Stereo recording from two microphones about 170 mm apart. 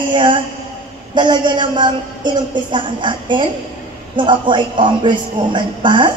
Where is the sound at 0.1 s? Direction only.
30° right (ahead or behind).